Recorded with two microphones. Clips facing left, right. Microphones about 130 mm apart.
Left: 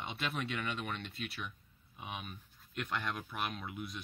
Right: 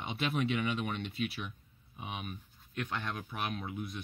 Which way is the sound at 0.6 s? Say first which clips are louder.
Right 5 dB; 10° right (ahead or behind).